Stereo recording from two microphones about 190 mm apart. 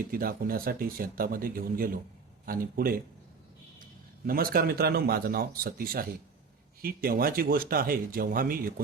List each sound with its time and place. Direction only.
0.1 s speech: 50° right (ahead or behind)
4.3 s speech: 50° right (ahead or behind)